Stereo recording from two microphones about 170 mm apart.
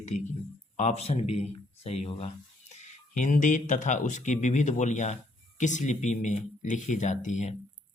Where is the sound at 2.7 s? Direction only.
45° left (ahead or behind).